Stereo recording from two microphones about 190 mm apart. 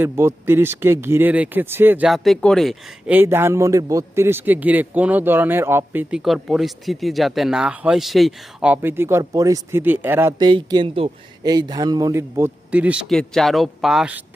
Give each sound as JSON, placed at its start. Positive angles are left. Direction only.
{"t": 0.0, "sound": "a man's voice", "side_deg": -15}
{"t": 3.1, "sound": "a man's voice", "side_deg": -10}
{"t": 10.4, "sound": "a man's voice", "side_deg": -25}